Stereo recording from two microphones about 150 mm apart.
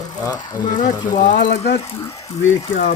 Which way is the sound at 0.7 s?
55° left (ahead or behind).